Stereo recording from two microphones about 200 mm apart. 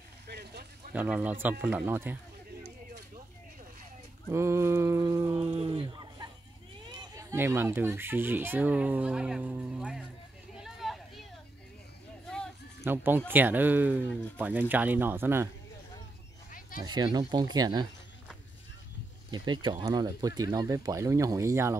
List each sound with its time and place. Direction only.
0.3 s vehicle: 55° right (ahead or behind)
0.9 s speech: 10° right (ahead or behind)
4.3 s speech: 15° right (ahead or behind)
5.3 s speech: 30° right (ahead or behind); by 10.0 s 5° right (ahead or behind)
10.5 s a sound: centre (ahead or behind)
12.8 s speech: 10° right (ahead or behind)
16.8 s speech: 20° right (ahead or behind)
19.3 s speech: 25° right (ahead or behind)